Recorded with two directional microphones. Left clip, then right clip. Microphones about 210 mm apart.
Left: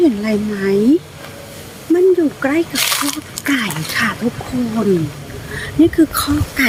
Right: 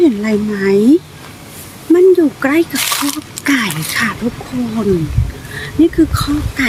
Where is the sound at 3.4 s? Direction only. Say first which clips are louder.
Right 3 dB; 15° right (ahead or behind).